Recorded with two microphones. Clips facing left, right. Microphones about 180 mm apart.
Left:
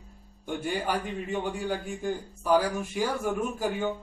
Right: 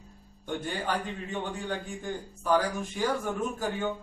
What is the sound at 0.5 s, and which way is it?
A man's voice, 10° left (ahead or behind).